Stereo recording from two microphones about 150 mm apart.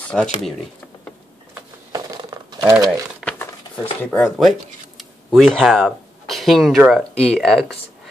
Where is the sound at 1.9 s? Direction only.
25° right (ahead or behind).